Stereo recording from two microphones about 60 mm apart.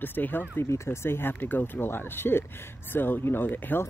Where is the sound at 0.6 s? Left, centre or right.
Left.